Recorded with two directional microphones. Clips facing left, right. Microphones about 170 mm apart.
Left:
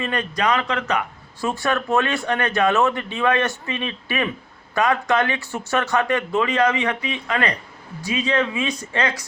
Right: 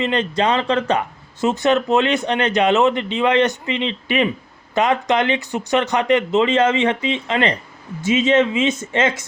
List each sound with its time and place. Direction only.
0.0 s speech: 20° right (ahead or behind)